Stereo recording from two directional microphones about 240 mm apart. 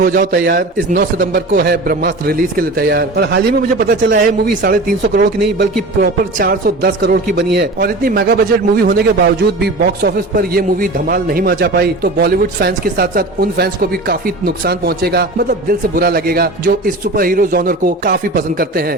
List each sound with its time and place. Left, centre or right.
0.0 s a man's voice: right